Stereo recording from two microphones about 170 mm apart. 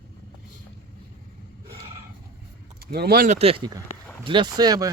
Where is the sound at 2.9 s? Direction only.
65° right (ahead or behind).